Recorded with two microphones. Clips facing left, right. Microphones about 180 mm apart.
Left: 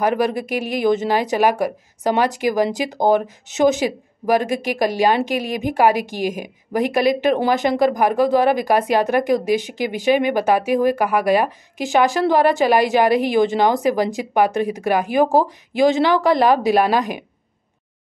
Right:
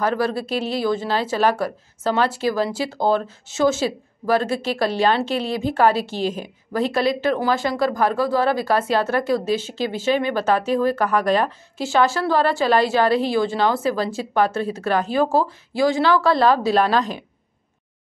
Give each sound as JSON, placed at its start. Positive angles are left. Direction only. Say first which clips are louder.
{"t": 0.0, "sound": "speech", "louder": "left 3 dB", "side_deg": 15}